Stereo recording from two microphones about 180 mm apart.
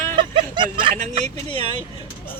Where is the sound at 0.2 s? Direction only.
25° right (ahead or behind).